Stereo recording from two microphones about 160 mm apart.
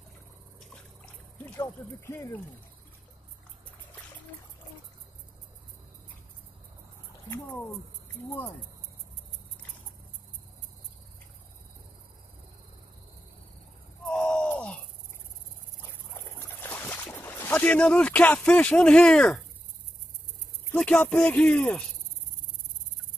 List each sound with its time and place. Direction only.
1.6 s speech: 15° left (ahead or behind)
7.2 s speech: 15° left (ahead or behind)
14.1 s groan: 5° left (ahead or behind)
16.3 s boat: 15° left (ahead or behind)
20.7 s speech: 5° left (ahead or behind)